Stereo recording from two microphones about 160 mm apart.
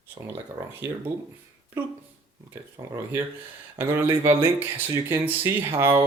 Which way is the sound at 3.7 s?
15° right (ahead or behind).